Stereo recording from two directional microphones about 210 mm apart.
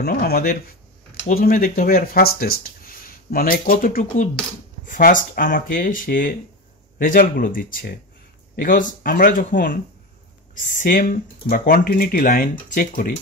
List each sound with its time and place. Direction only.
0.0 s speech: 50° left (ahead or behind)